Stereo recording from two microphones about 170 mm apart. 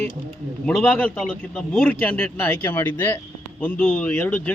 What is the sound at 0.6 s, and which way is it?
Speech, 5° left (ahead or behind).